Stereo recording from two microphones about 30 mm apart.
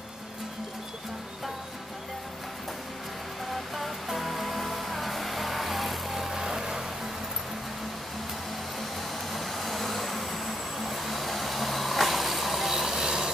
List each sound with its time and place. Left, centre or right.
3.7 s music: centre
6.4 s music: centre
8.7 s vehicle: centre